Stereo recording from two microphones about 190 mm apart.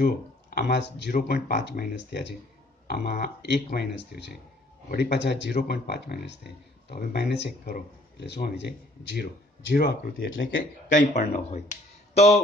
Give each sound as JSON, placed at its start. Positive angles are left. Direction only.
{"t": 0.6, "sound": "speech", "side_deg": 65}
{"t": 10.3, "sound": "speech", "side_deg": 85}
{"t": 11.0, "sound": "speech", "side_deg": 40}